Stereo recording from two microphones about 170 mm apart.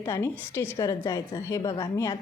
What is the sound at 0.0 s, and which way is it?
A woman's voice, 15° left (ahead or behind).